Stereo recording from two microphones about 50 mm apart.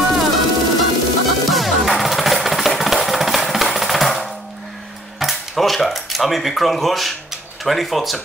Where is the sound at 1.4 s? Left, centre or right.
Centre.